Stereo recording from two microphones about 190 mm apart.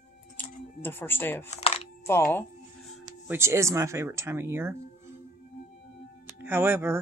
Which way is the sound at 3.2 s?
15° right (ahead or behind).